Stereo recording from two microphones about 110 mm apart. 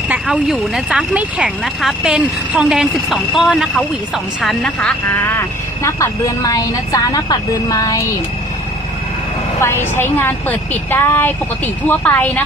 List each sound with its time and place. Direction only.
0.1 s speech: 5° right (ahead or behind)
5.1 s a woman's voice: 20° left (ahead or behind)
9.6 s a woman's voice: 20° left (ahead or behind)